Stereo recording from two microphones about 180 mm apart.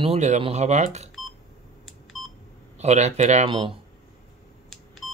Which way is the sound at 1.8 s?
Centre (ahead or behind).